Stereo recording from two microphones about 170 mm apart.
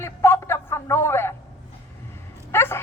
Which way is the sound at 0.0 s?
15° left (ahead or behind).